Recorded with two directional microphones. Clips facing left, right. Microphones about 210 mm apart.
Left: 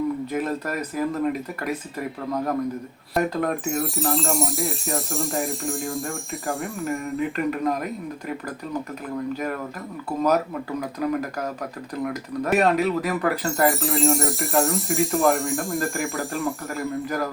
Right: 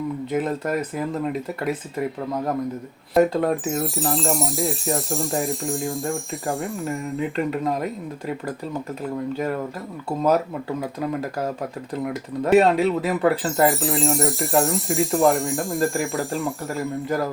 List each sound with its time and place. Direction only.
0.3 s speech: 25° right (ahead or behind)
3.4 s speech: 30° right (ahead or behind)
3.8 s speech: centre (ahead or behind)
7.2 s speech: 25° right (ahead or behind)
10.2 s speech: 25° right (ahead or behind)
13.7 s speech: centre (ahead or behind)